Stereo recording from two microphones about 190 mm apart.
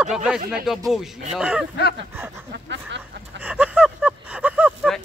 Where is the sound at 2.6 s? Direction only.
65° right (ahead or behind).